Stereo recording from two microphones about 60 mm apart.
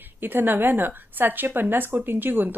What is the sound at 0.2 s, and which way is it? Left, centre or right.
A woman's voice, right.